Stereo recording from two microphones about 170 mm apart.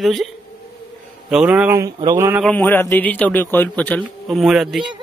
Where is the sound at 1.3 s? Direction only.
5° right (ahead or behind).